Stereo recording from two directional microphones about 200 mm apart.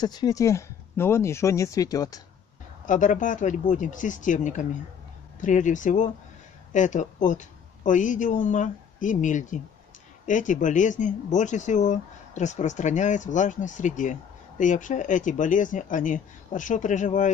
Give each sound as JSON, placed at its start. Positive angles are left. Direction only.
{"t": 0.0, "sound": "speech", "side_deg": 20}
{"t": 2.9, "sound": "a woman's voice", "side_deg": 40}